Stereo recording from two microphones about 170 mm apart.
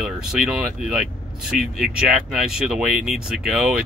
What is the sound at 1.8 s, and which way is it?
Speech, centre (ahead or behind).